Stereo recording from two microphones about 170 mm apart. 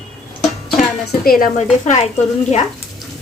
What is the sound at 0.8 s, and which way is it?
Speech, 60° left (ahead or behind).